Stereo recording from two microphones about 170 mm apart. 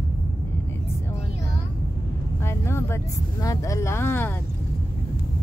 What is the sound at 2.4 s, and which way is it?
Speech, 15° left (ahead or behind).